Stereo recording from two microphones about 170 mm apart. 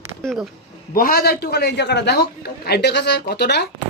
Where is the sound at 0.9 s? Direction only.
60° left (ahead or behind); by 3.7 s 80° left.